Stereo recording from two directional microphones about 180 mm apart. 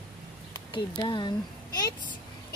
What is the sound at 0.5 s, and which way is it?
Speech, 25° left (ahead or behind).